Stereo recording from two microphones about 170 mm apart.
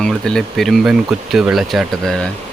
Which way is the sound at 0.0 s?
5° left (ahead or behind).